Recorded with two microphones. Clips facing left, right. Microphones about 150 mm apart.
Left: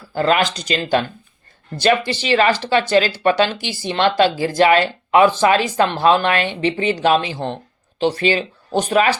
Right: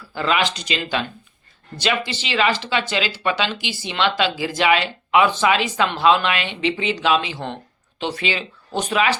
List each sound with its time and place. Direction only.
0.1 s speech: 45° left (ahead or behind)